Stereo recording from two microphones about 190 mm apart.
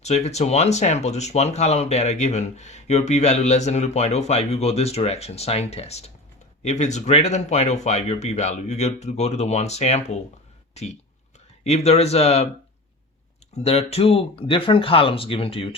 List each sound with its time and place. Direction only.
0.0 s speech: 35° left (ahead or behind)
13.6 s speech: 35° left (ahead or behind)